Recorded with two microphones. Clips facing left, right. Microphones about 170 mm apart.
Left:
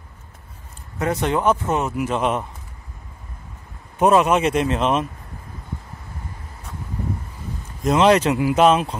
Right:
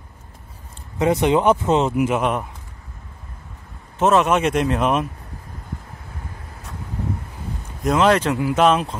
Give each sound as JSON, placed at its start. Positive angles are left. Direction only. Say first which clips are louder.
{"t": 0.9, "sound": "speech", "louder": "right 4 dB", "side_deg": -20}
{"t": 2.1, "sound": "speech", "louder": "even", "side_deg": 0}
{"t": 4.0, "sound": "speech", "louder": "left 1 dB", "side_deg": 10}
{"t": 7.8, "sound": "speech", "louder": "left 1 dB", "side_deg": 0}
{"t": 8.1, "sound": "speech", "louder": "left 2 dB", "side_deg": 10}